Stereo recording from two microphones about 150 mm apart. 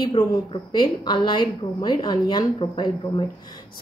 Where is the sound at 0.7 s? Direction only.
30° left (ahead or behind).